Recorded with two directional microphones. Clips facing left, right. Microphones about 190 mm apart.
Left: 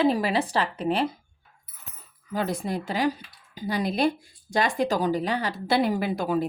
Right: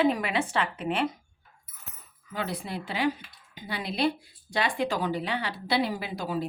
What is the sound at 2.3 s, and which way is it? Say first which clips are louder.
Speech: left 5 dB; 40° left (ahead or behind).